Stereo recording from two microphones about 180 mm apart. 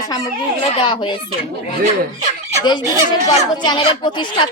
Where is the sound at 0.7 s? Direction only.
25° left (ahead or behind).